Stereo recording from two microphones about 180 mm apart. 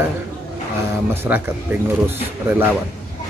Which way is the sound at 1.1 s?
10° right (ahead or behind).